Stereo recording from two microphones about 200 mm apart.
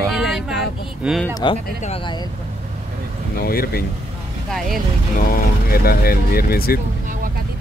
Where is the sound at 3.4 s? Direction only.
50° left (ahead or behind).